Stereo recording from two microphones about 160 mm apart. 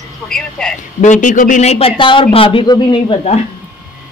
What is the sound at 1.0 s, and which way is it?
Speech, 50° left (ahead or behind).